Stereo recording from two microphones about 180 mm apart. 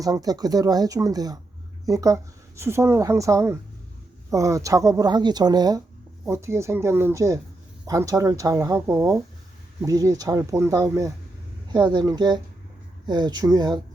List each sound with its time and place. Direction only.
0.0 s speech: 20° right (ahead or behind)